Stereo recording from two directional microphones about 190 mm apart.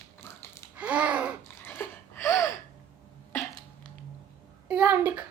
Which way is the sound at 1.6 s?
10° left (ahead or behind).